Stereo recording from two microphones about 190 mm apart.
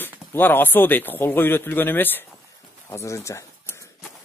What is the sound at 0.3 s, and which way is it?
A man's voice, 10° left (ahead or behind).